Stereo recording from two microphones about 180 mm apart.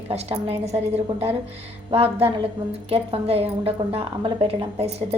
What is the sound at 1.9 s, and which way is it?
A woman's voice, 30° right (ahead or behind).